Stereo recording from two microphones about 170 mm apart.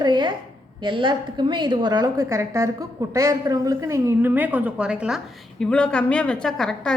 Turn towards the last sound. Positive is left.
turn(degrees=5)  # may be behind; listen again after turning